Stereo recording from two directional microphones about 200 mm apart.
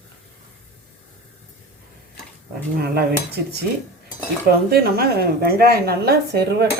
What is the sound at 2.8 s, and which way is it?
Speech, 50° right (ahead or behind).